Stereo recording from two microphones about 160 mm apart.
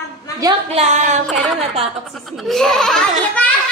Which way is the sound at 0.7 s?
45° right (ahead or behind).